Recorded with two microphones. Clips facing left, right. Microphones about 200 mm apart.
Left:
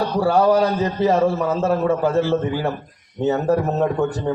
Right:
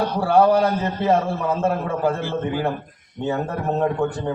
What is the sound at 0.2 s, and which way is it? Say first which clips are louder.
A man's voice: even; 55° right (ahead or behind).